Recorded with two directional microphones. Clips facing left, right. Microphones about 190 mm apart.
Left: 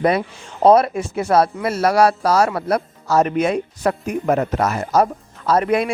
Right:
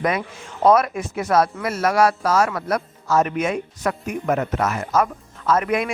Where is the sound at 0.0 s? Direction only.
30° left (ahead or behind).